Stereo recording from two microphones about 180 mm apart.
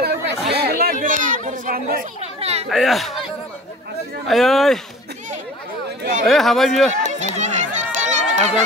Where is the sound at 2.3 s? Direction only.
35° right (ahead or behind).